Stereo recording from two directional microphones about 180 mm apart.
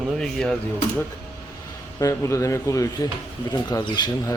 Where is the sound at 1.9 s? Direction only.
15° left (ahead or behind).